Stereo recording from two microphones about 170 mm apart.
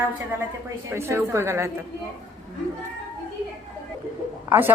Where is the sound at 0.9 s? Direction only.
15° right (ahead or behind).